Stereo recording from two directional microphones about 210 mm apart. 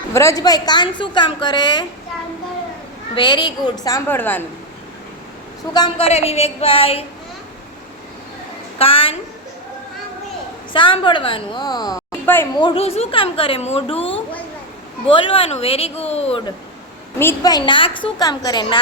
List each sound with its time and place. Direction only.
0.1 s a woman's voice: 15° left (ahead or behind)
3.2 s a woman's voice: 20° left (ahead or behind)
5.7 s a woman's voice: 25° left (ahead or behind)
8.8 s a woman's voice: 25° left (ahead or behind)
10.7 s a woman's voice: 25° left (ahead or behind)
12.5 s a woman's voice: 25° left (ahead or behind)
17.2 s a woman's voice: 15° left (ahead or behind)